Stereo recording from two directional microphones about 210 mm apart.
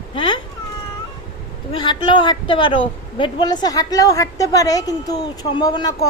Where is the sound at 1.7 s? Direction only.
20° left (ahead or behind).